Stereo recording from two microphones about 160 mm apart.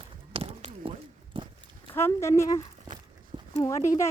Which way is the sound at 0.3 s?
35° right (ahead or behind).